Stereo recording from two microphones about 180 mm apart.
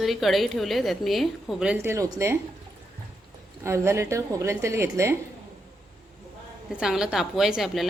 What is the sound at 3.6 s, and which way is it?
A woman's voice, 15° right (ahead or behind).